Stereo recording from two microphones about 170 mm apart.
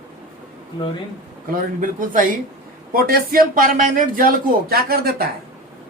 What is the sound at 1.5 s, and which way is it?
A man's voice, 50° right (ahead or behind).